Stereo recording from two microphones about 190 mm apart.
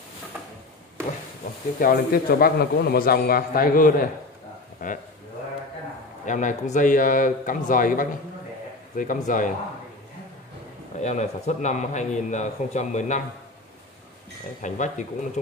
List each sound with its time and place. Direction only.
1.8 s a man's voice: 50° left (ahead or behind)
4.8 s a sound: 45° left (ahead or behind)
6.2 s a man's voice: 40° left (ahead or behind)
11.0 s a man's voice: 35° left (ahead or behind)
14.6 s a man's voice: 40° left (ahead or behind)